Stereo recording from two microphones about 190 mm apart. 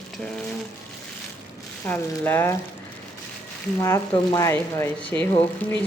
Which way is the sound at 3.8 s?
15° left (ahead or behind).